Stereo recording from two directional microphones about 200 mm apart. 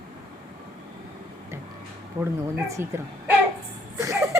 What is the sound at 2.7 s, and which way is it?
Speech, 15° right (ahead or behind).